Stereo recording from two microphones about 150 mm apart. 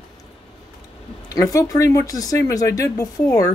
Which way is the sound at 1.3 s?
20° left (ahead or behind).